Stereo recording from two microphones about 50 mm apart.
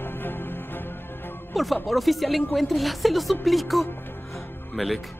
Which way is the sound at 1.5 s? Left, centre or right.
Centre.